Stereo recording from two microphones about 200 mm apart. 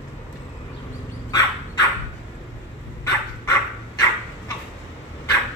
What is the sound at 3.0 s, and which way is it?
Dog, 15° left (ahead or behind).